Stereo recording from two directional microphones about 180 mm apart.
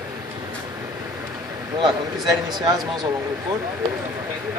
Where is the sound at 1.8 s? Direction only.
25° right (ahead or behind).